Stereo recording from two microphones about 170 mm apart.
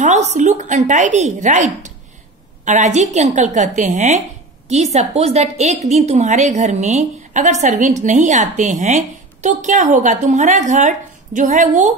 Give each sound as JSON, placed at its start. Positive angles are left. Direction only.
{"t": 0.0, "sound": "a woman's voice", "side_deg": -45}